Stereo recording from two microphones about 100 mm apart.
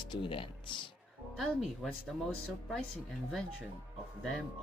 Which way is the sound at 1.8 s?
Centre (ahead or behind).